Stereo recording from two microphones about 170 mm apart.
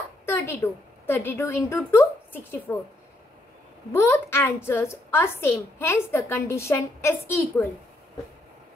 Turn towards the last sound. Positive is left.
turn(degrees=15)  # may be behind; listen again after turning